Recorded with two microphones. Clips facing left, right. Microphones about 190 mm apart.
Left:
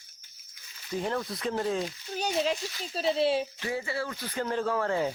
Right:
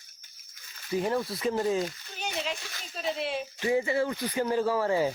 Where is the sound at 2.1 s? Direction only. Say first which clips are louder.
Left 7 dB; 35° left (ahead or behind).